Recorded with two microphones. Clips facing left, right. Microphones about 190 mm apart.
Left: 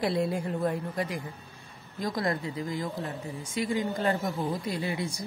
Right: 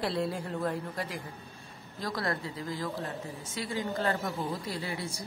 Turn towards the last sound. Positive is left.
turn(degrees=20)  # may be behind; listen again after turning